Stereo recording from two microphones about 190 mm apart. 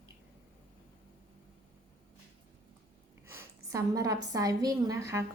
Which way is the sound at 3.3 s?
15° right (ahead or behind).